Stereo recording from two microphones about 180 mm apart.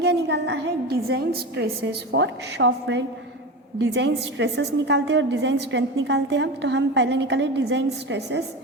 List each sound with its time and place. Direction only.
0.0 s a woman's voice: 70° right (ahead or behind)